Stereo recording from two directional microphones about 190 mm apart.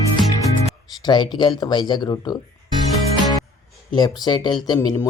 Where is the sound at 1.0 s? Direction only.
25° left (ahead or behind).